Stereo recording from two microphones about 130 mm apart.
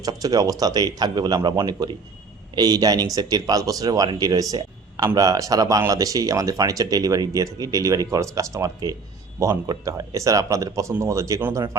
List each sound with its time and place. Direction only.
0.0 s speech: 30° right (ahead or behind)